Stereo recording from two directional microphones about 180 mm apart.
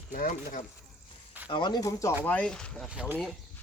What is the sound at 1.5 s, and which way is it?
Speech, 25° left (ahead or behind).